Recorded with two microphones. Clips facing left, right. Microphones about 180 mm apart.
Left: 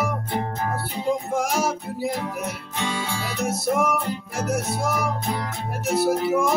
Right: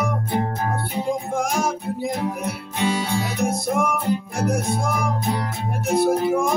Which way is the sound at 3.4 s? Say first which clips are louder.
Left 1 dB; 5° left (ahead or behind).